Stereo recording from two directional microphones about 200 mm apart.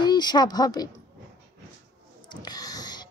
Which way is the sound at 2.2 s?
20° left (ahead or behind).